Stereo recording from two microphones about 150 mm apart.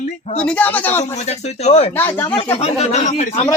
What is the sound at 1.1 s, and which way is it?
Speech, 50° left (ahead or behind).